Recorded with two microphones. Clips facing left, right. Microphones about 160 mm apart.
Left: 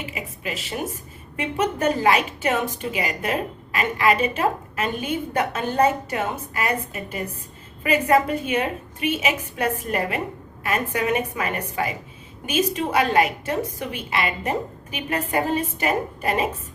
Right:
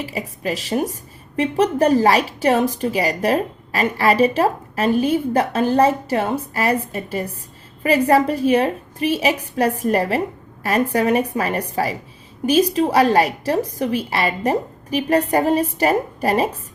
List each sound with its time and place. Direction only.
0.0 s a woman's voice: 35° right (ahead or behind)